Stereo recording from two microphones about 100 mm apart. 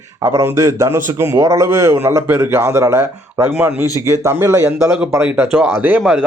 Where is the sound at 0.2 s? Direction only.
30° right (ahead or behind).